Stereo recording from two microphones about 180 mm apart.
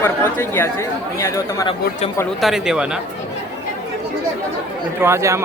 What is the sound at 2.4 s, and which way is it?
Speech, centre (ahead or behind).